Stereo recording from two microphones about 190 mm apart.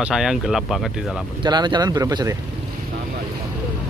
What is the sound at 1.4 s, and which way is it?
Speech, 25° right (ahead or behind).